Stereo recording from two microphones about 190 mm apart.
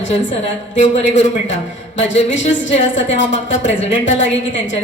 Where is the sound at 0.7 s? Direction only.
40° left (ahead or behind).